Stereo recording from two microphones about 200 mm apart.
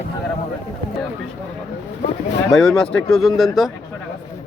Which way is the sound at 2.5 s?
Centre (ahead or behind).